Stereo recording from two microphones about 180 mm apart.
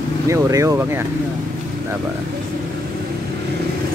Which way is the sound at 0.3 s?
15° right (ahead or behind).